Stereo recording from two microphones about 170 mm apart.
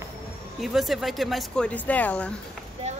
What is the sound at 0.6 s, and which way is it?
Speech, centre (ahead or behind).